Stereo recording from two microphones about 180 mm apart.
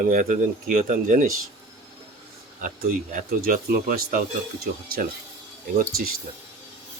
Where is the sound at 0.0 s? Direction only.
50° right (ahead or behind).